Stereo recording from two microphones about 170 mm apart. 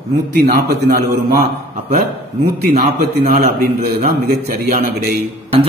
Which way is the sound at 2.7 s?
55° right (ahead or behind).